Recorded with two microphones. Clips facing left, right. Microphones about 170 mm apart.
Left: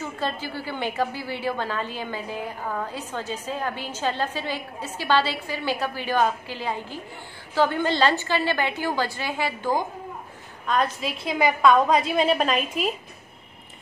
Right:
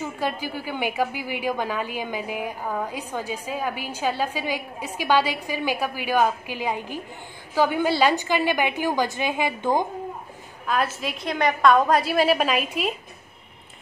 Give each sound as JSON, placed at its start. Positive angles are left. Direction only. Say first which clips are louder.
{"t": 0.0, "sound": "a woman's voice", "louder": "right 2 dB", "side_deg": -10}
{"t": 10.7, "sound": "a woman's voice", "louder": "left 1 dB", "side_deg": -5}